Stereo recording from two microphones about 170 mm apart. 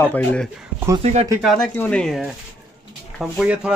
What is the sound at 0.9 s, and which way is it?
Speech, 35° right (ahead or behind).